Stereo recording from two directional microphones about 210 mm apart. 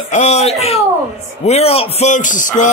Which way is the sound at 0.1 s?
35° left (ahead or behind).